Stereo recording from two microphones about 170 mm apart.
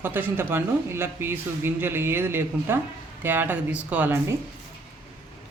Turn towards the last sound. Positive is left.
turn(degrees=-10)  # may be behind; listen again after turning